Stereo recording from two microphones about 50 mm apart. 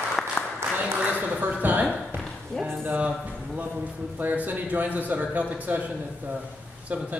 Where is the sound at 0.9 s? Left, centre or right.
Right.